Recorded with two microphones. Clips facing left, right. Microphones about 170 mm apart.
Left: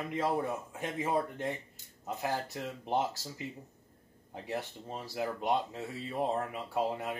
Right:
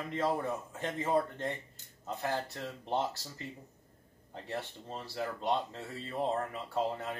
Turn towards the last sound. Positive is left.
turn(degrees=10)  # may be behind; listen again after turning